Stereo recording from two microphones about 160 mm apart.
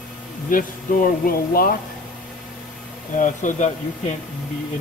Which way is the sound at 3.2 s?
50° left (ahead or behind).